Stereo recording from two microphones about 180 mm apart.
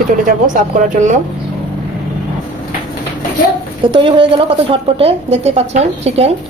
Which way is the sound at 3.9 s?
30° right (ahead or behind).